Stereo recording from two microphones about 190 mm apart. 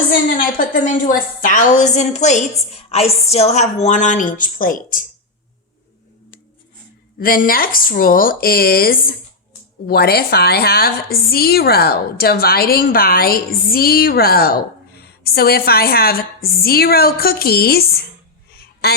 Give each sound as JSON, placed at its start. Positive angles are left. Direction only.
{"t": 0.3, "sound": "a woman's voice", "side_deg": 45}
{"t": 7.2, "sound": "a woman's voice", "side_deg": 50}
{"t": 18.8, "sound": "a sound", "side_deg": 55}